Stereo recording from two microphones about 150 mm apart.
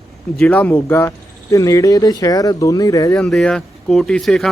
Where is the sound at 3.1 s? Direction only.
5° left (ahead or behind).